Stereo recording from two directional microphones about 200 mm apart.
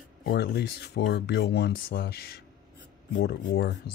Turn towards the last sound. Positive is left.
turn(degrees=60)  # may be behind; listen again after turning